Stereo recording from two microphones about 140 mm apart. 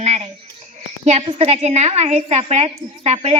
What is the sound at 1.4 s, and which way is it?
A woman's voice, 55° right (ahead or behind).